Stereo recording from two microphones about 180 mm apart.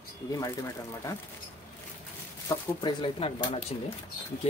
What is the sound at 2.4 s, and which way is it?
Speech, 25° left (ahead or behind).